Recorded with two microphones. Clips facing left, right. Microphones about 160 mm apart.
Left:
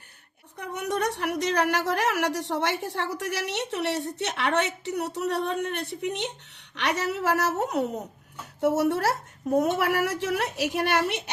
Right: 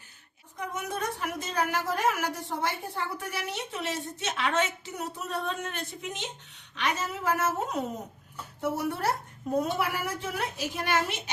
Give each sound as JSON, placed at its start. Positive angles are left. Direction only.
{"t": 0.5, "sound": "a woman's voice", "side_deg": 65}
{"t": 9.6, "sound": "a woman's voice", "side_deg": 70}